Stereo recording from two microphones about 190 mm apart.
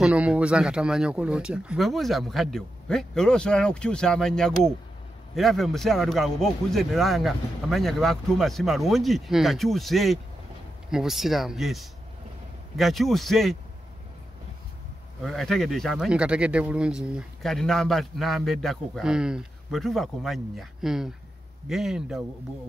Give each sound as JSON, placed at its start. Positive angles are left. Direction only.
{"t": 0.0, "sound": "speech", "side_deg": -5}
{"t": 15.2, "sound": "speech", "side_deg": 0}